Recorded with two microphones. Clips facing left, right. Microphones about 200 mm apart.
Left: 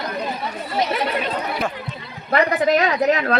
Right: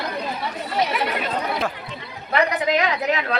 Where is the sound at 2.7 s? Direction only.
45° left (ahead or behind).